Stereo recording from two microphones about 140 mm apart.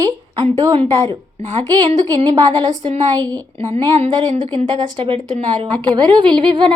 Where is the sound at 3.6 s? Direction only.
40° right (ahead or behind).